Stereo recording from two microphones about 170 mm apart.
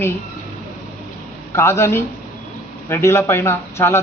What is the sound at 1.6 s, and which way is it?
A man's voice, 15° left (ahead or behind).